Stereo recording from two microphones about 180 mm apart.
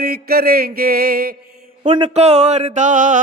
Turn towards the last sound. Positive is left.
turn(degrees=-45)  # may be behind; listen again after turning